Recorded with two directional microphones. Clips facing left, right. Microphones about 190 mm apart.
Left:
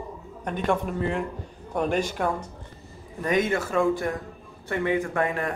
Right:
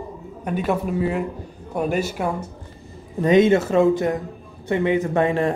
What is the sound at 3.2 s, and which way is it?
Speech, 25° right (ahead or behind).